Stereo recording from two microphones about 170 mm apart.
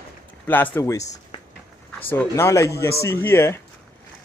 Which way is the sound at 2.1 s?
15° left (ahead or behind).